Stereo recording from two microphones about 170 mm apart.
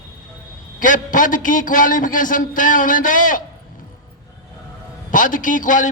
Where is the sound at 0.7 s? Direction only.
50° left (ahead or behind).